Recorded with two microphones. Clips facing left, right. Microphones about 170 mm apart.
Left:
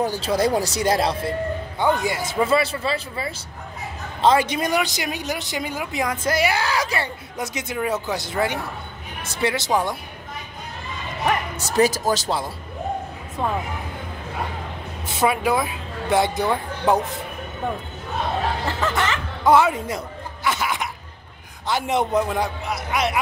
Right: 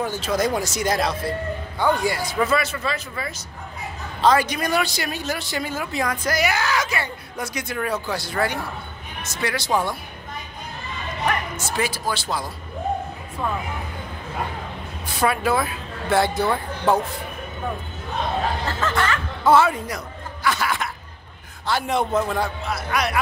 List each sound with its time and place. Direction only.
0.0 s speech: 35° left (ahead or behind)
7.3 s speech: 20° left (ahead or behind)
11.5 s speech: 40° left (ahead or behind)
15.0 s a woman's voice: 20° left (ahead or behind)
18.7 s music: 20° left (ahead or behind)
21.6 s speech: 20° left (ahead or behind)